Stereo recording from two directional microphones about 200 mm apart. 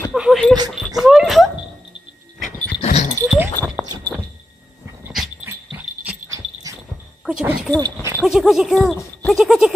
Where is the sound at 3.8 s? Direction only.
20° right (ahead or behind).